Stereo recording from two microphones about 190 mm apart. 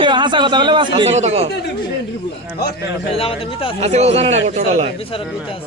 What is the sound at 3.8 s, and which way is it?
Speech, 35° right (ahead or behind).